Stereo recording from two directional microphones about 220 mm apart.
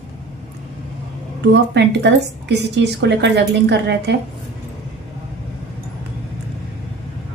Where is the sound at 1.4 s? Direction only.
50° right (ahead or behind).